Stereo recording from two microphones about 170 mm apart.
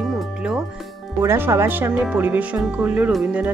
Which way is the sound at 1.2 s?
15° right (ahead or behind).